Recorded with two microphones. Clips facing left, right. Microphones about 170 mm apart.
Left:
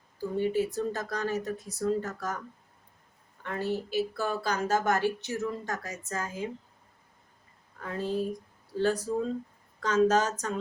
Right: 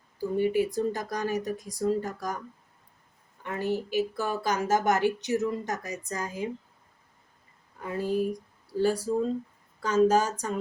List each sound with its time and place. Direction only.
0.3 s a woman's voice: 10° right (ahead or behind)
3.4 s a woman's voice: 15° right (ahead or behind)
7.8 s a woman's voice: 10° right (ahead or behind)